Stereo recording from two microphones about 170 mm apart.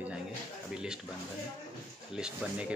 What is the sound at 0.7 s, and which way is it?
Speech, 5° right (ahead or behind).